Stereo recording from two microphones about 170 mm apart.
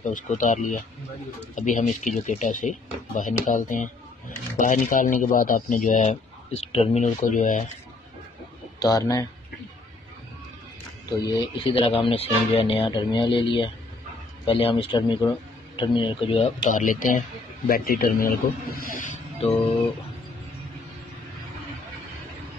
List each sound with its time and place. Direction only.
0.1 s speech: 45° left (ahead or behind)
8.7 s speech: 20° left (ahead or behind)
11.1 s a man's voice: 25° left (ahead or behind)
16.6 s a man's voice: 50° left (ahead or behind)
18.8 s snake: 50° left (ahead or behind)